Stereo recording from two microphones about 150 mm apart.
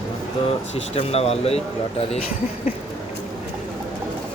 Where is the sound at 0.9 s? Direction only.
45° left (ahead or behind).